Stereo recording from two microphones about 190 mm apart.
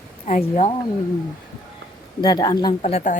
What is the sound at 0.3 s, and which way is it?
Speech, 40° left (ahead or behind).